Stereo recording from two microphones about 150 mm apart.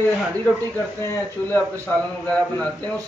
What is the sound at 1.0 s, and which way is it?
A man's voice, 15° left (ahead or behind).